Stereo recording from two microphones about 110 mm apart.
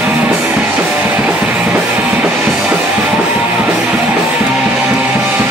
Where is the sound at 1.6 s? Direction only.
25° right (ahead or behind).